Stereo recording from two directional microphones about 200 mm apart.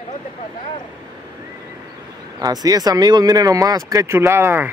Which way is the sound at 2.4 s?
20° right (ahead or behind).